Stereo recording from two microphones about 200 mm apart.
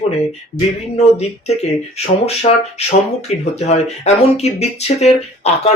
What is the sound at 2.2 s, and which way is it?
Speech, 30° left (ahead or behind).